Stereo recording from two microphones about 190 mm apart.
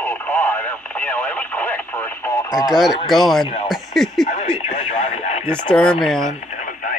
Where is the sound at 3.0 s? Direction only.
Centre (ahead or behind).